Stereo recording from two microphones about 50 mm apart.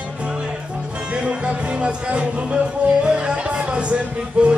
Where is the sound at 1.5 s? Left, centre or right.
Right.